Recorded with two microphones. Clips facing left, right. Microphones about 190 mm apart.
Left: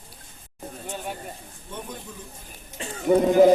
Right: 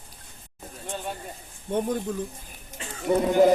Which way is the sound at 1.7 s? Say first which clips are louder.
Right 11 dB; 55° right (ahead or behind).